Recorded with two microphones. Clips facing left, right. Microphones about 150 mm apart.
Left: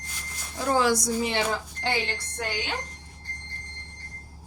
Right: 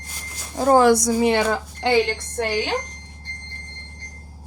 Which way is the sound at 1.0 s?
80° right.